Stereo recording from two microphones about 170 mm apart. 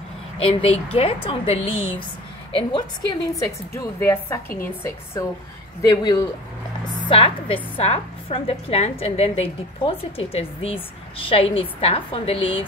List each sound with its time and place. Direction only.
0.4 s a woman's voice: 35° left (ahead or behind); by 4.6 s 15° left (ahead or behind)
5.8 s speech: 20° left (ahead or behind)
7.1 s a woman's voice: 35° left (ahead or behind)